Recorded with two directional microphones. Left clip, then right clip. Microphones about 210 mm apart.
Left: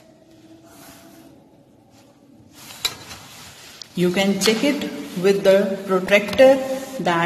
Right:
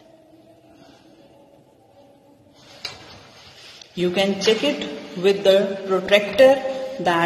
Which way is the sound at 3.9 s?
20° left (ahead or behind).